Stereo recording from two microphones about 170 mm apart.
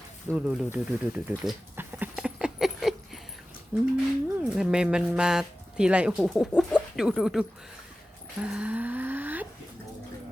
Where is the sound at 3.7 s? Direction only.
10° right (ahead or behind).